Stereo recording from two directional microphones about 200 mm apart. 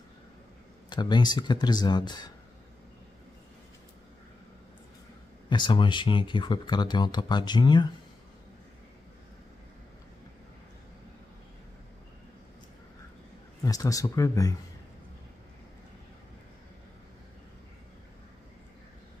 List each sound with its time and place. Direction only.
0.8 s speech: 20° left (ahead or behind)
5.5 s speech: 25° left (ahead or behind)
13.6 s speech: 15° left (ahead or behind)